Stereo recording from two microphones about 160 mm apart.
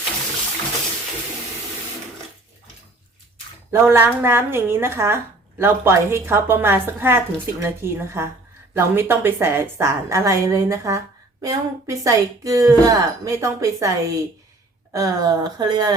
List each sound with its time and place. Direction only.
3.7 s speech: 15° right (ahead or behind)